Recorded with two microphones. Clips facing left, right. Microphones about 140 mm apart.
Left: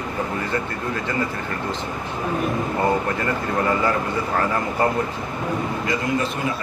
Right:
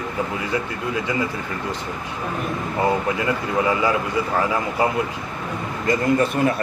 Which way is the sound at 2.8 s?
10° right (ahead or behind).